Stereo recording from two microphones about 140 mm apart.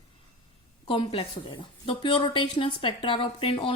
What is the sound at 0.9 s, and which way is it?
A woman's voice, 40° left (ahead or behind).